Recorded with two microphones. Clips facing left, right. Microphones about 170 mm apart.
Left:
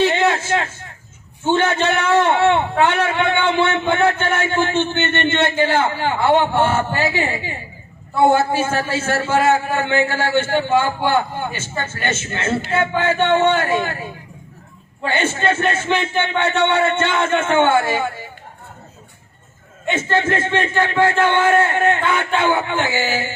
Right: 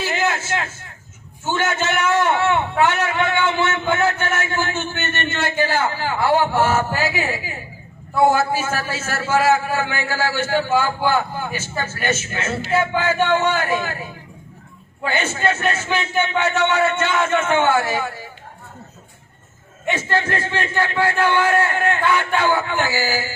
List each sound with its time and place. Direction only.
0.0 s a sound: 30° left (ahead or behind)
1.5 s a man's voice: 30° left (ahead or behind)
19.9 s a man's voice: 25° left (ahead or behind)